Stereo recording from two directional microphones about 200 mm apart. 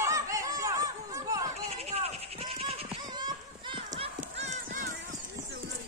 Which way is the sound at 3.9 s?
35° right (ahead or behind).